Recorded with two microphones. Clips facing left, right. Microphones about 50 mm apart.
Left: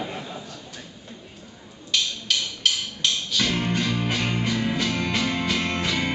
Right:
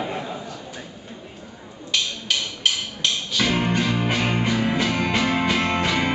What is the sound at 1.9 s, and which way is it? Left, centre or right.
Music, centre.